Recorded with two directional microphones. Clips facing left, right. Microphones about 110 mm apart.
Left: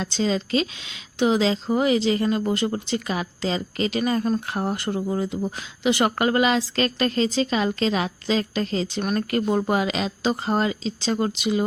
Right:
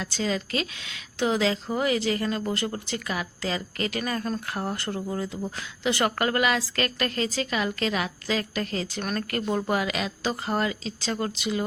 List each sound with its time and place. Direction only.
0.0 s speech: 25° left (ahead or behind)